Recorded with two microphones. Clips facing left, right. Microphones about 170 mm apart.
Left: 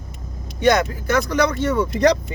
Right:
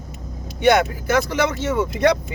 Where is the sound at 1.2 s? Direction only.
5° right (ahead or behind).